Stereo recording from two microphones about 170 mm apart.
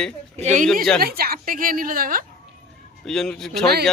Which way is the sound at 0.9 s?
65° right (ahead or behind).